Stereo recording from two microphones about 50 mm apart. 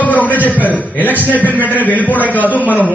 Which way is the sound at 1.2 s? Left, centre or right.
Left.